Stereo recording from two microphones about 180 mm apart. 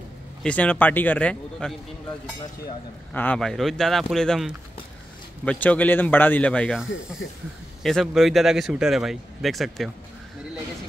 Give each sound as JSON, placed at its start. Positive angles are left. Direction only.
{"t": 0.4, "sound": "a man's voice", "side_deg": 10}
{"t": 3.1, "sound": "a man's voice", "side_deg": 10}
{"t": 7.2, "sound": "speech", "side_deg": 90}
{"t": 7.8, "sound": "a man's voice", "side_deg": 0}